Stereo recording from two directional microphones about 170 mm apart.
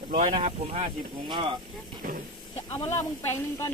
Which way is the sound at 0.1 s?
50° right (ahead or behind).